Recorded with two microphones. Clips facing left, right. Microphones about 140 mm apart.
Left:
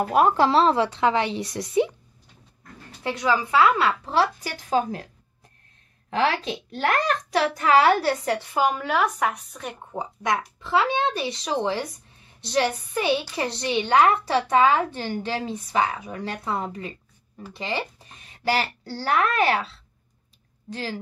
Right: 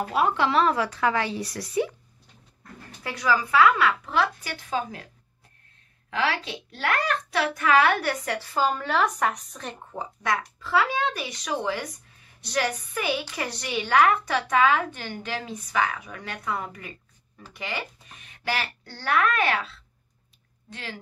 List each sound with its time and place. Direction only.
0.0 s a child's voice: 50° left (ahead or behind); by 2.0 s 20° left (ahead or behind)
3.0 s a child's voice: 25° left (ahead or behind); by 5.0 s 40° left (ahead or behind)
6.0 s a child's voice: 35° left (ahead or behind)